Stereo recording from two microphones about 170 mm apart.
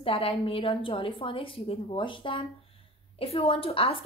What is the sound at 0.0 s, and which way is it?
A woman's voice, 35° left (ahead or behind).